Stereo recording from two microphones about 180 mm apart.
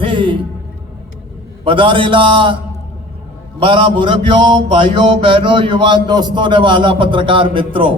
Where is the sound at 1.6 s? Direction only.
30° right (ahead or behind).